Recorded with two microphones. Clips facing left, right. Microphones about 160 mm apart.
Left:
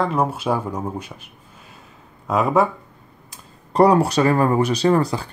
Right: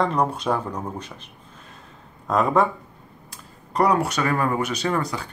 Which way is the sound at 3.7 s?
30° left (ahead or behind).